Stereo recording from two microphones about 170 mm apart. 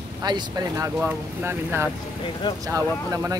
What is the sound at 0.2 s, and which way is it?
Speech, 25° right (ahead or behind).